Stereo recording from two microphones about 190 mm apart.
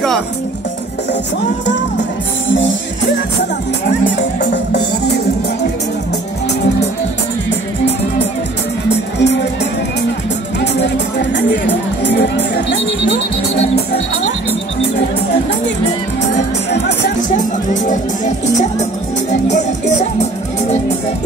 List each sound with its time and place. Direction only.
1.7 s music: 70° left (ahead or behind)
8.8 s music: 65° left (ahead or behind)
10.6 s music: 65° left (ahead or behind)
17.8 s music: 40° left (ahead or behind)